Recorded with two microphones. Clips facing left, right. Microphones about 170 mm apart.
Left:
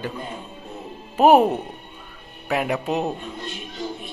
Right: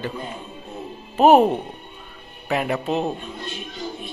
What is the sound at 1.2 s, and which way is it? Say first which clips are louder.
Speech: right 1 dB; 10° left (ahead or behind).